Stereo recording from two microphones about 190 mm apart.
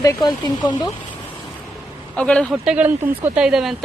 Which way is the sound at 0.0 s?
20° left (ahead or behind).